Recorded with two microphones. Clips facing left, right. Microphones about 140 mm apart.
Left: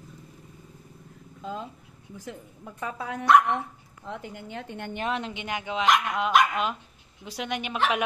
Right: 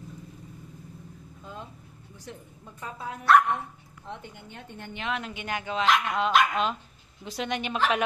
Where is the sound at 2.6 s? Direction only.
85° left.